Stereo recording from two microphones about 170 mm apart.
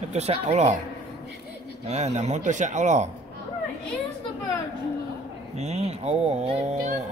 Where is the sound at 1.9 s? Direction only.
40° right (ahead or behind).